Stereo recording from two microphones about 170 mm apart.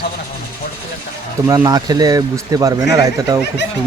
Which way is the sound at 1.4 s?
20° right (ahead or behind).